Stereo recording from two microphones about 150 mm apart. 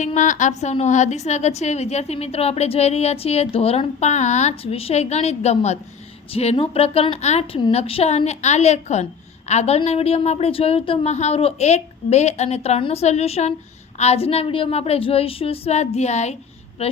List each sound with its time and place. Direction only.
0.0 s a woman's voice: 55° left (ahead or behind)